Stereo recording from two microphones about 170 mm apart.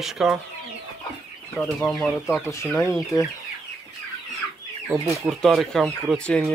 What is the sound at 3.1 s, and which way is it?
Speech, 20° left (ahead or behind).